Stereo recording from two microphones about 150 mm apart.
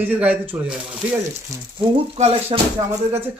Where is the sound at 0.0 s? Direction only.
10° right (ahead or behind).